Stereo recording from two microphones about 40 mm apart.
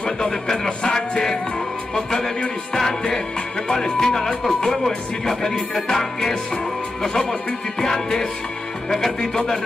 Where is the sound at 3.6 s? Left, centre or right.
Centre.